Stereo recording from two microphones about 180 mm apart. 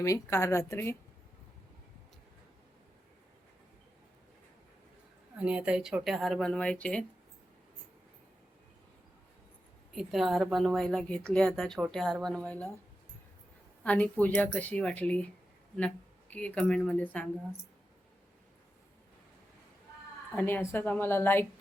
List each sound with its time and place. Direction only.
0.0 s speech: 15° left (ahead or behind)
5.4 s a woman's voice: 5° right (ahead or behind)
9.9 s a woman's voice: centre (ahead or behind)
13.8 s speech: 10° left (ahead or behind)
16.3 s a woman's voice: 5° left (ahead or behind)
20.3 s speech: 10° left (ahead or behind)